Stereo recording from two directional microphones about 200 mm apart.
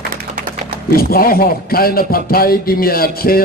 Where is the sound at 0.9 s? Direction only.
50° left (ahead or behind).